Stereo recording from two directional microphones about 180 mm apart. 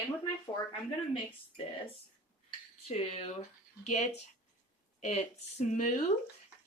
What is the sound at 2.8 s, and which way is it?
Speech, 35° left (ahead or behind).